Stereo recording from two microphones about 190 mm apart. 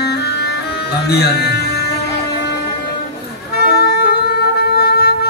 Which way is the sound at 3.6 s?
55° left (ahead or behind).